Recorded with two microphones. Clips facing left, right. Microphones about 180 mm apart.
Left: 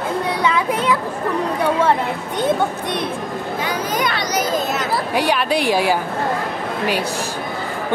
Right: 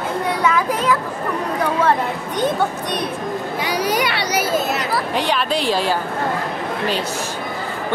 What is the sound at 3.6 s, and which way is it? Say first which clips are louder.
Speech: right 2 dB; 10° right (ahead or behind).